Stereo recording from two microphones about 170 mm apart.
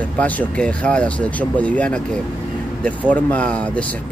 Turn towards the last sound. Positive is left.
turn(degrees=5)  # may be behind; listen again after turning